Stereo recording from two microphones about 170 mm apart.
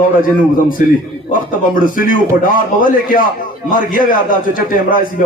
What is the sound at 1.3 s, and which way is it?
A man's voice, 55° left (ahead or behind).